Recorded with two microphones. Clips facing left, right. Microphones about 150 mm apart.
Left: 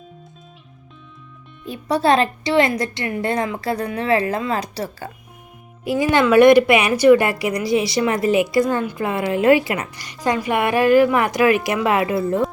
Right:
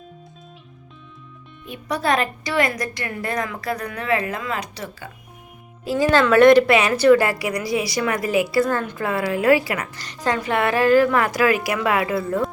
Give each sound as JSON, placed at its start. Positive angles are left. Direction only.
{"t": 1.6, "sound": "a woman's voice", "side_deg": 30}
{"t": 5.8, "sound": "a woman's voice", "side_deg": 15}
{"t": 8.5, "sound": "a woman's voice", "side_deg": 15}
{"t": 10.0, "sound": "a woman's voice", "side_deg": 10}